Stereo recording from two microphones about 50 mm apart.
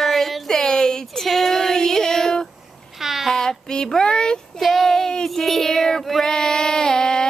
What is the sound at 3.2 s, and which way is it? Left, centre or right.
Speech, centre.